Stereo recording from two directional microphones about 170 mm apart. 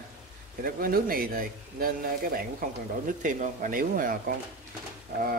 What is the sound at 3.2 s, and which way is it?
Speech, 50° right (ahead or behind).